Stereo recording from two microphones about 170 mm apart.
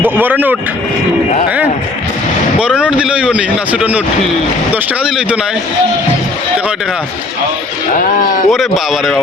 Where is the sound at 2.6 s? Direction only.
5° right (ahead or behind).